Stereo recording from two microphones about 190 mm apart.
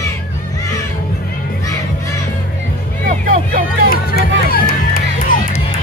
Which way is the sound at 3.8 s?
55° left (ahead or behind).